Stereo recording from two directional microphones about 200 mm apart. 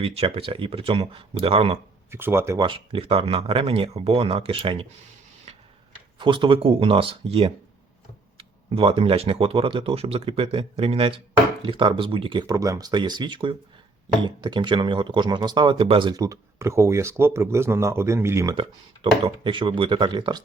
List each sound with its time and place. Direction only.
0.0 s speech: 30° right (ahead or behind)
2.0 s speech: 10° right (ahead or behind)
5.5 s tick-tock: 30° right (ahead or behind)
6.1 s speech: 25° right (ahead or behind)
19.2 s speech: 25° right (ahead or behind)